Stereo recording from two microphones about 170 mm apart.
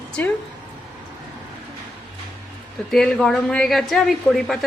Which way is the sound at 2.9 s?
5° left (ahead or behind).